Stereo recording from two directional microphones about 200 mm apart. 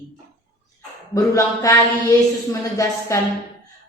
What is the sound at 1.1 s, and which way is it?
Speech, 15° left (ahead or behind).